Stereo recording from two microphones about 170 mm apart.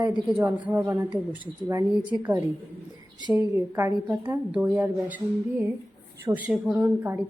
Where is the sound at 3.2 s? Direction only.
15° right (ahead or behind).